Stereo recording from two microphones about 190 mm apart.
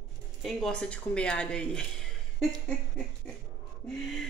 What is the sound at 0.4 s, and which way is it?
Speech, 5° left (ahead or behind).